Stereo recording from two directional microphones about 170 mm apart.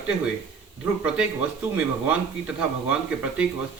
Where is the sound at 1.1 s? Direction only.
5° right (ahead or behind).